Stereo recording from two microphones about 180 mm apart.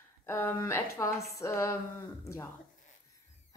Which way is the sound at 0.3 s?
15° left (ahead or behind).